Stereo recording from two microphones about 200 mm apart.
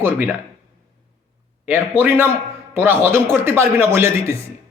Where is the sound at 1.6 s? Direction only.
10° right (ahead or behind).